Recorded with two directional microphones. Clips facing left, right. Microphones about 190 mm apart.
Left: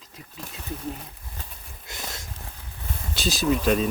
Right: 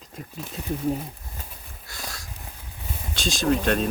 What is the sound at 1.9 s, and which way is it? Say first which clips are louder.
Sniff: left 1 dB; 20° left (ahead or behind).